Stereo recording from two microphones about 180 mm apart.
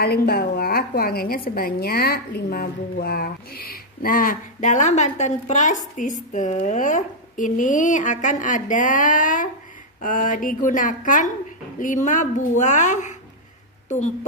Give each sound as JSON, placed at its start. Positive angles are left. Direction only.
{"t": 0.0, "sound": "a woman's voice", "side_deg": 60}